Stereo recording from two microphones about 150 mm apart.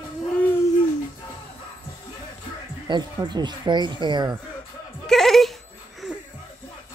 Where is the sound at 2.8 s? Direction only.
30° right (ahead or behind).